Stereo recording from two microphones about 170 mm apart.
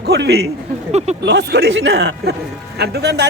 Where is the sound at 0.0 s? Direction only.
75° right (ahead or behind).